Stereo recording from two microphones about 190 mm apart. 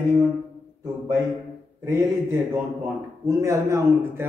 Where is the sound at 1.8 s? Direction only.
15° right (ahead or behind).